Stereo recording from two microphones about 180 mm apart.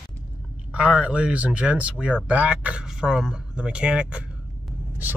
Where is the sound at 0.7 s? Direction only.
5° right (ahead or behind).